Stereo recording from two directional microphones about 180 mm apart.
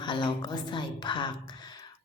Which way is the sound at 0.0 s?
25° left (ahead or behind).